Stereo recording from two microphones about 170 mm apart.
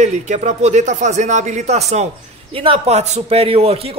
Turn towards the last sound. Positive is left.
turn(degrees=-35)  # may be behind; listen again after turning